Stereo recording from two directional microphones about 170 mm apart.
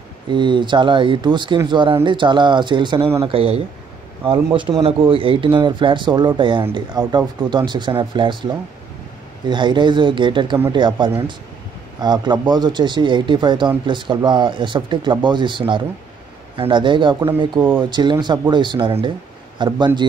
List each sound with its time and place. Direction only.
0.3 s speech: 25° right (ahead or behind)